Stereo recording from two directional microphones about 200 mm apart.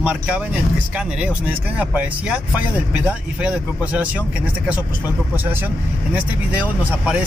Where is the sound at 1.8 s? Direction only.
5° right (ahead or behind).